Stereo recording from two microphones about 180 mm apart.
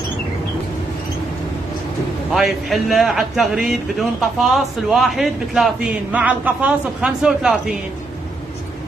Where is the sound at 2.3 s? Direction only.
Centre (ahead or behind).